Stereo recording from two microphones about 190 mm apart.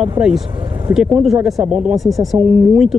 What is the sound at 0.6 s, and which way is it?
Speech, 20° right (ahead or behind).